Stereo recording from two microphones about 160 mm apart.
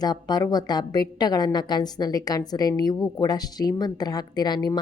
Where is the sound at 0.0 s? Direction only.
25° left (ahead or behind).